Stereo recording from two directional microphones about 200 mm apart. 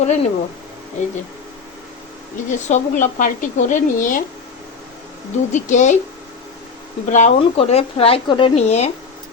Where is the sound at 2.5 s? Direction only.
40° left (ahead or behind).